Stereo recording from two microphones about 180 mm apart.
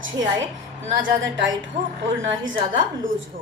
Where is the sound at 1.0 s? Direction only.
90° right.